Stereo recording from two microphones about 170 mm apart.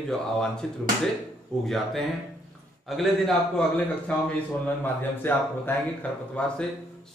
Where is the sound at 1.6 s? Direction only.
Centre (ahead or behind).